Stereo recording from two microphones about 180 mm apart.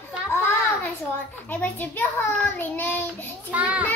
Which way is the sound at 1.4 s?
10° left (ahead or behind).